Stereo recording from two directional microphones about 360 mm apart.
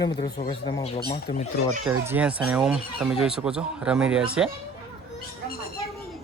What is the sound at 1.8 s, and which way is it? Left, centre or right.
Speech, centre.